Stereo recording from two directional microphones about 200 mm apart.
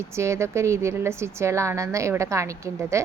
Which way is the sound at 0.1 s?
15° right (ahead or behind).